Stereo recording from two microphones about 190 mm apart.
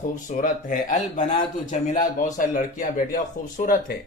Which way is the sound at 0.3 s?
40° left (ahead or behind).